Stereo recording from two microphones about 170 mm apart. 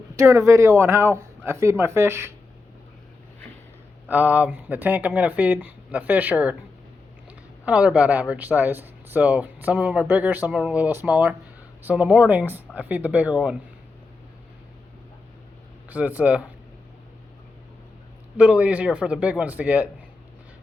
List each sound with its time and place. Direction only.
0.2 s speech: 15° right (ahead or behind)
4.1 s speech: 10° right (ahead or behind)
15.9 s speech: 10° right (ahead or behind)
18.3 s speech: 5° right (ahead or behind)